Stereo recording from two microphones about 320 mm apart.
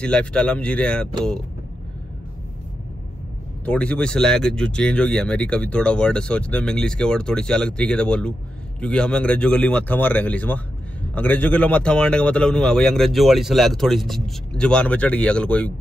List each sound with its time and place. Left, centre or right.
0.0 s speech: centre
3.6 s speech: centre